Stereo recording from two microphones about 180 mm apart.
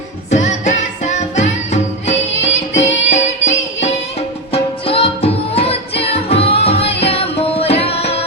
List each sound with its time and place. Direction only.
0.3 s music: 40° left (ahead or behind)
4.5 s music: 30° left (ahead or behind)